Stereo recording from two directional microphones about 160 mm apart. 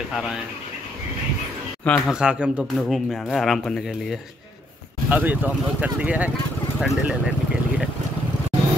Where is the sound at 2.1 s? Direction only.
5° right (ahead or behind).